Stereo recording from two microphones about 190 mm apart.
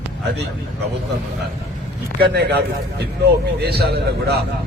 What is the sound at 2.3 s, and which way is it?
A man's voice, 60° right (ahead or behind).